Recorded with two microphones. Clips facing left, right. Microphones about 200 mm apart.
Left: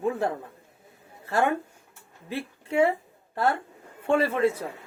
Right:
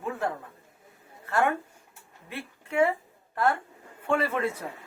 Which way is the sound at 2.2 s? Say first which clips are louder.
Left 6 dB; 35° left (ahead or behind).